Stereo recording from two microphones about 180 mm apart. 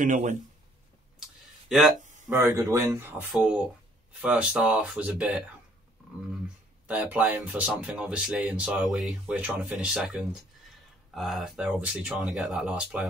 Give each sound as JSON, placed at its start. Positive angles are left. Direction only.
{"t": 0.0, "sound": "speech", "side_deg": -45}
{"t": 1.7, "sound": "speech", "side_deg": 0}
{"t": 2.2, "sound": "speech", "side_deg": -15}
{"t": 6.9, "sound": "speech", "side_deg": -5}